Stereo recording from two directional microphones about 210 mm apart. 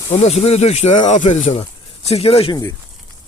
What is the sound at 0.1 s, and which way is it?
Speech, 30° left (ahead or behind).